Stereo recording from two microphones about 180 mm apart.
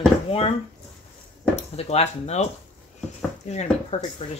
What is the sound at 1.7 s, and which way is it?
Speech, 35° left (ahead or behind).